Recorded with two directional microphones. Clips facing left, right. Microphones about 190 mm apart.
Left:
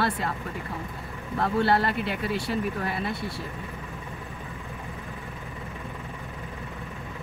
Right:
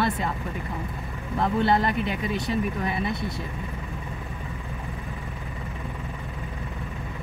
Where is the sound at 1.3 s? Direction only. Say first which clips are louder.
Right 1 dB; 20° right (ahead or behind).